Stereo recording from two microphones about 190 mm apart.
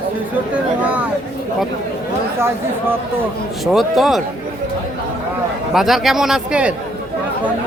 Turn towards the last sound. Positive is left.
turn(degrees=-5)  # may be behind; listen again after turning